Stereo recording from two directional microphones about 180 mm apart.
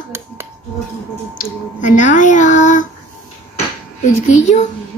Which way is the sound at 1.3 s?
45° left (ahead or behind).